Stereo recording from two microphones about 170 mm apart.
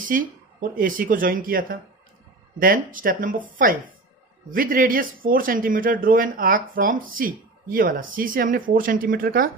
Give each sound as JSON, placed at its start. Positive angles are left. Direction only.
{"t": 0.0, "sound": "speech", "side_deg": -50}